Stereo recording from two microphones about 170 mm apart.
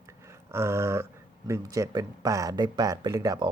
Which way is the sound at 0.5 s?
15° right (ahead or behind).